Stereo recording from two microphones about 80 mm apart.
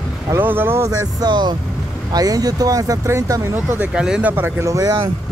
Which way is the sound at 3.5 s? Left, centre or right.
Centre.